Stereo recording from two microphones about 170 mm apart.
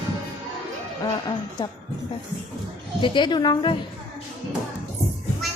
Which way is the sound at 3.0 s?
25° left (ahead or behind).